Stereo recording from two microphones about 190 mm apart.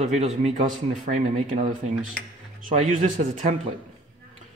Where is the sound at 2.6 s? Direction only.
40° right (ahead or behind).